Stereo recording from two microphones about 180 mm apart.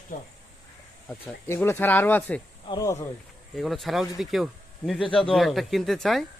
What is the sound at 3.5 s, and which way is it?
Speech, centre (ahead or behind).